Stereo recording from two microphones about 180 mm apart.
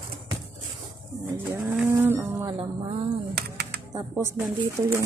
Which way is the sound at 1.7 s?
10° right (ahead or behind).